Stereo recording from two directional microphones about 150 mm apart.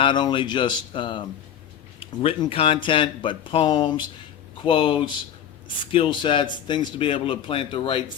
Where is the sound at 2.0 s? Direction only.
40° left (ahead or behind).